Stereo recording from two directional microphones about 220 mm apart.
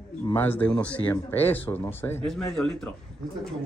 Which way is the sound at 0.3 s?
10° left (ahead or behind).